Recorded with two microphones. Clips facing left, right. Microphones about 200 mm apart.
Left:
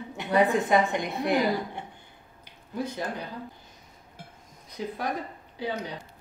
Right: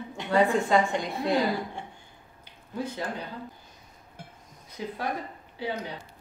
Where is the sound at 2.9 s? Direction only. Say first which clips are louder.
Left 1 dB; 15° left (ahead or behind).